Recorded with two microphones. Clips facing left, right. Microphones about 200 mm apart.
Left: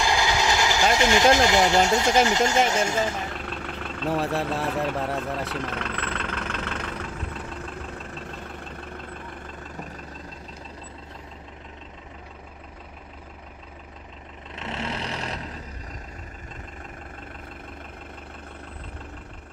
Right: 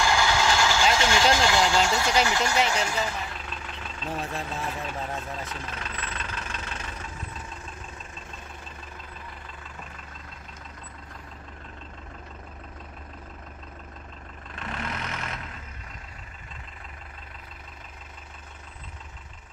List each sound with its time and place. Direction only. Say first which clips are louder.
0.0 s vehicle: even; 15° left (ahead or behind)
0.9 s speech: left 4 dB; 20° left (ahead or behind)
3.2 s vehicle: left 4 dB; 50° left (ahead or behind)
14.5 s vehicle: left 3 dB; 25° left (ahead or behind)